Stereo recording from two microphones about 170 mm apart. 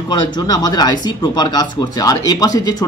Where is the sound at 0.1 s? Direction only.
25° left (ahead or behind).